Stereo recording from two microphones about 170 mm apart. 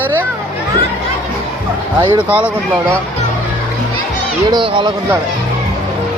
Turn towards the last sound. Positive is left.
turn(degrees=-30)  # may be behind; listen again after turning